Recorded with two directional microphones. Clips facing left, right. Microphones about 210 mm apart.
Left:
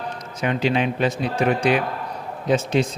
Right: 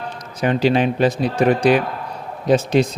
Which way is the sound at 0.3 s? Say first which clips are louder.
Right 5 dB; 35° right (ahead or behind).